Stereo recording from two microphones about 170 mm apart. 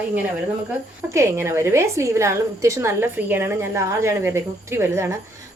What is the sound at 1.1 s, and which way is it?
A woman's voice, 15° right (ahead or behind).